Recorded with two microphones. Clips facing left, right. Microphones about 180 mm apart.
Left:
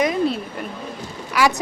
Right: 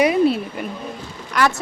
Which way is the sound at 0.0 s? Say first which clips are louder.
Right 4 dB; 10° right (ahead or behind).